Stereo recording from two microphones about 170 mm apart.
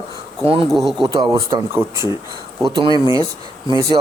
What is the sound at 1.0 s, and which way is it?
Speech, 25° right (ahead or behind).